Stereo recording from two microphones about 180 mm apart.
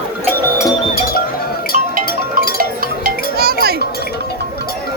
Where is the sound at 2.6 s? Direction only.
55° right (ahead or behind).